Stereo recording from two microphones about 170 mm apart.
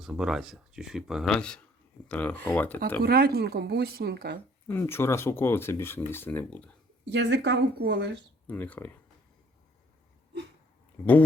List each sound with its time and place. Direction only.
0.0 s speech: 5° right (ahead or behind)
3.0 s speech: 65° right (ahead or behind)
4.7 s speech: 15° left (ahead or behind)
7.0 s speech: 90° right
8.4 s speech: 10° left (ahead or behind)